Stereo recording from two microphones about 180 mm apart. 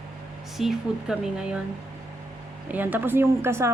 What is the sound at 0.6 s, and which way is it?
Speech, centre (ahead or behind).